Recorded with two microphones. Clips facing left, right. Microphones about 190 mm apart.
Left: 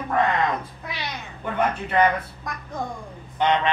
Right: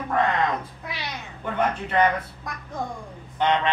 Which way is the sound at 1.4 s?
10° left (ahead or behind).